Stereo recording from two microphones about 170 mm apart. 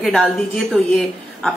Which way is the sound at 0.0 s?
5° left (ahead or behind).